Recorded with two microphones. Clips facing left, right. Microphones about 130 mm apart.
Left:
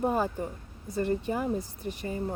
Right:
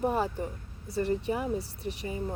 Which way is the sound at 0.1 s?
40° left (ahead or behind).